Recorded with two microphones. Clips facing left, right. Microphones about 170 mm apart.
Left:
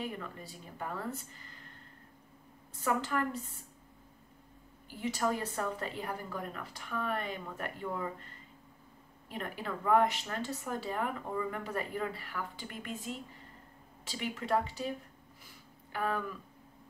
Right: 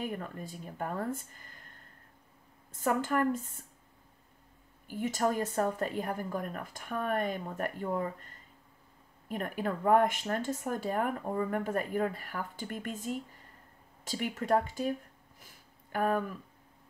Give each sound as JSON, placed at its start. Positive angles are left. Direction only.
{"t": 0.0, "sound": "speech", "side_deg": -50}
{"t": 2.7, "sound": "speech", "side_deg": -50}
{"t": 4.8, "sound": "speech", "side_deg": -45}
{"t": 9.3, "sound": "speech", "side_deg": -50}